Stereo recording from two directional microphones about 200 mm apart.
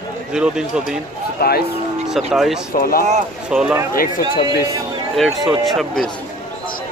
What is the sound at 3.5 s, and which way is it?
Speech, 5° right (ahead or behind).